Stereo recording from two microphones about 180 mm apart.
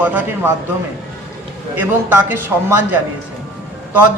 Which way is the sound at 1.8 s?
10° right (ahead or behind).